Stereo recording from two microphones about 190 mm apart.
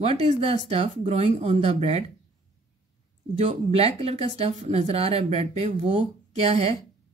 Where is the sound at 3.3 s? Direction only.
35° right (ahead or behind).